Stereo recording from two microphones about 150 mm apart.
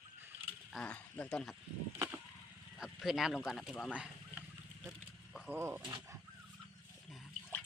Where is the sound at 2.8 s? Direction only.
Centre (ahead or behind).